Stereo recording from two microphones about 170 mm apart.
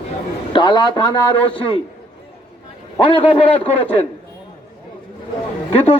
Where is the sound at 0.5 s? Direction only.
25° left (ahead or behind).